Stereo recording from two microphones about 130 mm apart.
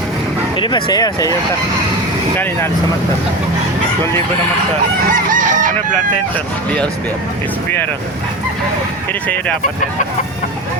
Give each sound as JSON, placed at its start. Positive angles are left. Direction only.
{"t": 0.5, "sound": "speech", "side_deg": 40}
{"t": 5.1, "sound": "chicken", "side_deg": -85}